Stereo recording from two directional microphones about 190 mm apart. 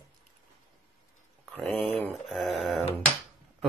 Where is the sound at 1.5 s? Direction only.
5° left (ahead or behind).